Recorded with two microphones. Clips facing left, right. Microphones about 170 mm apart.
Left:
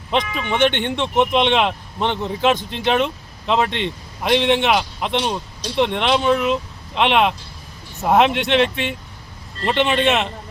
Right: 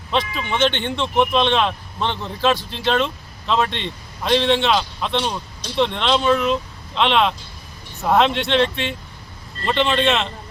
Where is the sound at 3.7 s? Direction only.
65° left (ahead or behind).